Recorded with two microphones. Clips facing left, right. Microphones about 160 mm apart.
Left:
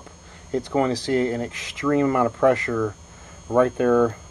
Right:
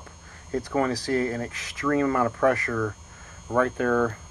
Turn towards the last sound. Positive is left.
turn(degrees=25)  # may be behind; listen again after turning